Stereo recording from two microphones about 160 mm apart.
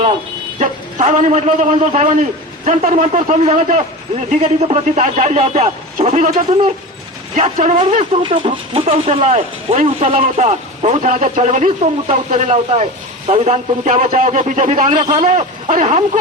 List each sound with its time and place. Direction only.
0.6 s speech: 50° right (ahead or behind)
8.1 s speech: 30° right (ahead or behind); by 16.0 s 50° right (ahead or behind)